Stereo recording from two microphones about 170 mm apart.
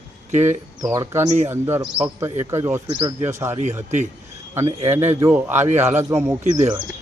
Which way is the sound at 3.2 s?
15° right (ahead or behind).